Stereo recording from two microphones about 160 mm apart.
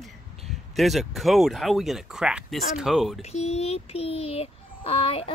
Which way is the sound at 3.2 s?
40° left (ahead or behind).